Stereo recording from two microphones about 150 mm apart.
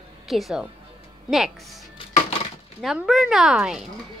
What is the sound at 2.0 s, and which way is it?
Music, 35° left (ahead or behind).